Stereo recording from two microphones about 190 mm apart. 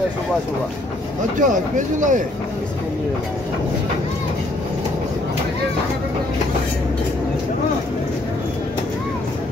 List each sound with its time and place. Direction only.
1.4 s speech: 40° right (ahead or behind)